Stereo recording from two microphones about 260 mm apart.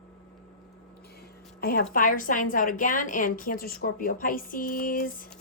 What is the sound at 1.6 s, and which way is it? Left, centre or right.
A woman's voice, left.